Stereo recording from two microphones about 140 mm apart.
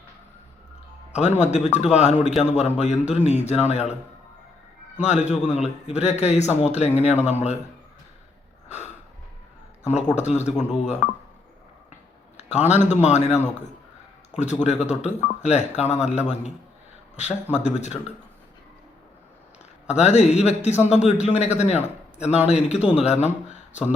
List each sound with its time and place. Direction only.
1.1 s a man's voice: 55° left (ahead or behind)
4.9 s a man's voice: 55° left (ahead or behind)
10.2 s speech: 55° left (ahead or behind)
12.4 s a man's voice: 50° left (ahead or behind)
17.5 s speech: 55° left (ahead or behind)
19.9 s a man's voice: 50° left (ahead or behind)
22.5 s a man's voice: 10° right (ahead or behind)
23.0 s a man's voice: 50° left (ahead or behind)